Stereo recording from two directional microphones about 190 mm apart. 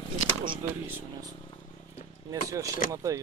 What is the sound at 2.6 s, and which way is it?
Speech, 45° left (ahead or behind).